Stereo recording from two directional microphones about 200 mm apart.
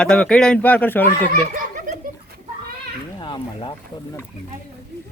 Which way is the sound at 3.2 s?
25° left (ahead or behind).